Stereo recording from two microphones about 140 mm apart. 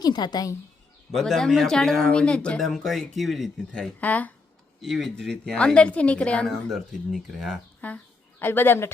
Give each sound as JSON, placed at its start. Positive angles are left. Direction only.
{"t": 0.0, "sound": "a woman's voice", "side_deg": 30}
{"t": 1.1, "sound": "a woman's voice", "side_deg": 5}
{"t": 4.8, "sound": "a woman's voice", "side_deg": 0}
{"t": 7.8, "sound": "speech", "side_deg": 10}